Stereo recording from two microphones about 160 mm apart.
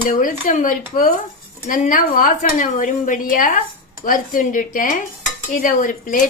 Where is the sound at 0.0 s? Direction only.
60° left (ahead or behind).